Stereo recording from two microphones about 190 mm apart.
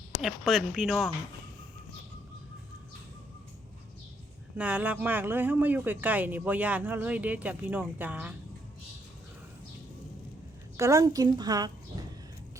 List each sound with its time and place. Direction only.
0.2 s speech: centre (ahead or behind)
4.5 s speech: 10° right (ahead or behind)
10.8 s a woman's voice: 15° right (ahead or behind)